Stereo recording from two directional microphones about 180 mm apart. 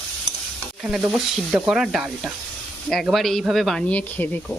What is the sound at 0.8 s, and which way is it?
Stir, 5° right (ahead or behind).